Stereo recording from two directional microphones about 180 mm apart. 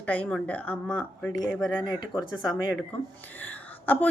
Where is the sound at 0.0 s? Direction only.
10° left (ahead or behind).